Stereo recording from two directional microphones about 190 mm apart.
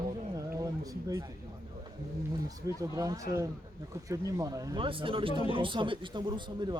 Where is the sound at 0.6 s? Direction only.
20° right (ahead or behind).